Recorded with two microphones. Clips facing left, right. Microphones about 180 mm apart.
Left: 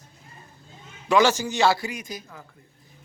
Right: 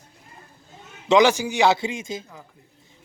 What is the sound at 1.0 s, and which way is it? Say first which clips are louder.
A man's voice: right 3 dB; 15° right (ahead or behind).